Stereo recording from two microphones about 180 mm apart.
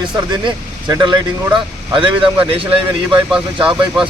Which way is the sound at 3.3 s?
5° right (ahead or behind).